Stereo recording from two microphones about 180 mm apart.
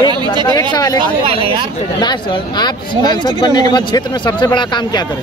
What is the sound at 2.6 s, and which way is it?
Speech, 25° left (ahead or behind).